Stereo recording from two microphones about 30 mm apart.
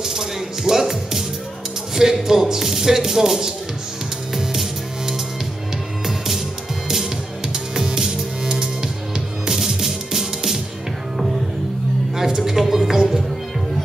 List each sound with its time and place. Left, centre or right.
0.0 s music: centre
2.0 s speech: centre
6.0 s music: centre
12.2 s a sound: centre